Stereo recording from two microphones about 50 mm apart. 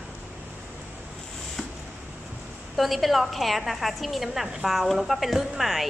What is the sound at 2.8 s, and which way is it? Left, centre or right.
A woman's voice, centre.